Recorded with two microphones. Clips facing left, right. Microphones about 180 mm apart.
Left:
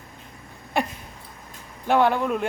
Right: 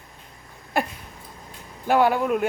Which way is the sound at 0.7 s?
Centre (ahead or behind).